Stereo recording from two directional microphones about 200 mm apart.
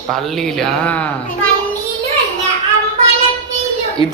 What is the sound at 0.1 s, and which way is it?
A man's voice, centre (ahead or behind).